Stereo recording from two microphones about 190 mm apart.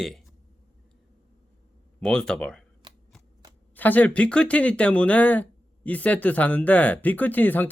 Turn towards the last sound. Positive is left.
turn(degrees=10)  # may be behind; listen again after turning